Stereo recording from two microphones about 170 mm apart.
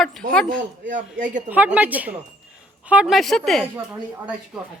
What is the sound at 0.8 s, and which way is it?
Speech, 90° right.